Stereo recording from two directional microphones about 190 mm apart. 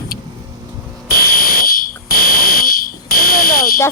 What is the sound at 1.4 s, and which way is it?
Fire alarm, 50° left (ahead or behind).